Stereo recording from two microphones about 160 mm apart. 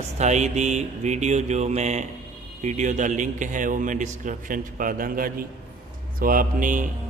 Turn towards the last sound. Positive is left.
turn(degrees=-55)  # may be behind; listen again after turning